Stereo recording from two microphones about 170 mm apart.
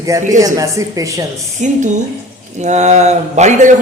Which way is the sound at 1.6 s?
45° right (ahead or behind).